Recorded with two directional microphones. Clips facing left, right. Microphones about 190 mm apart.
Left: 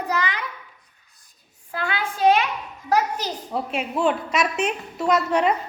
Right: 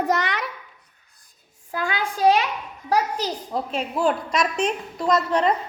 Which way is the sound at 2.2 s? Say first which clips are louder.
Even; 40° right (ahead or behind).